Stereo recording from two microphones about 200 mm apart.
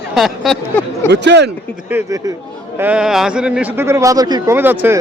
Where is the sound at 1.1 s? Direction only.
60° right (ahead or behind).